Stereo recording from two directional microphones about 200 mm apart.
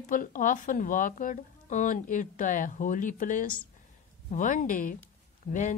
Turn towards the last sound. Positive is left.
turn(degrees=40)  # may be behind; listen again after turning